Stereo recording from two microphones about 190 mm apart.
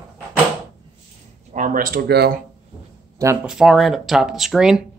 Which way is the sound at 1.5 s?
45° right (ahead or behind).